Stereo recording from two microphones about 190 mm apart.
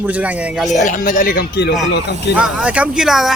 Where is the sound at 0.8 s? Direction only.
45° left (ahead or behind).